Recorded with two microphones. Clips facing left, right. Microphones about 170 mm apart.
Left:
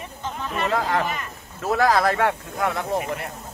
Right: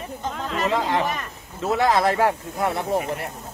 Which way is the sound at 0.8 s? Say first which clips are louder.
Right 1 dB; 25° right (ahead or behind).